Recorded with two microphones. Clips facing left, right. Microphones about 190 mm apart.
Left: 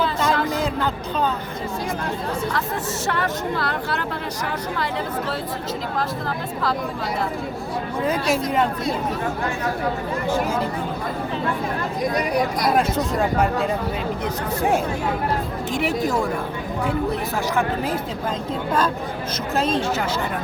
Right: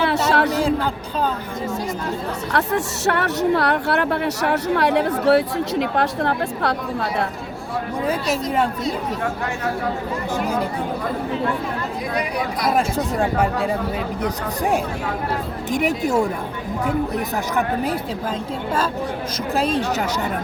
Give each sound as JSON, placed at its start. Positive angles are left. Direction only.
{"t": 0.0, "sound": "a sound", "side_deg": -75}
{"t": 2.5, "sound": "speech", "side_deg": -70}
{"t": 8.0, "sound": "speech", "side_deg": -10}